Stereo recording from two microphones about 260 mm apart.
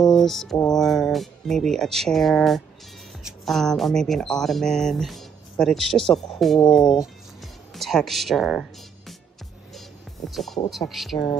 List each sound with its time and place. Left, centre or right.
0.0 s a sound: centre
0.7 s speech: centre
9.8 s music: centre
10.7 s speech: centre